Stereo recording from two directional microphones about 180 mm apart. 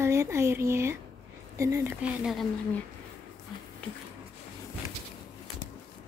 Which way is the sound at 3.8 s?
5° left (ahead or behind).